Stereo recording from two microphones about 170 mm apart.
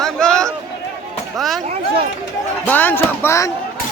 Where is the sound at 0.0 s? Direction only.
5° left (ahead or behind).